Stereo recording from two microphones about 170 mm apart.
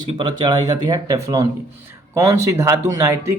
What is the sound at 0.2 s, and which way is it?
Speech, 25° right (ahead or behind).